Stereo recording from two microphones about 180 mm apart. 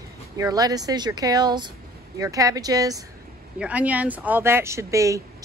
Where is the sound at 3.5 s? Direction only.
10° right (ahead or behind).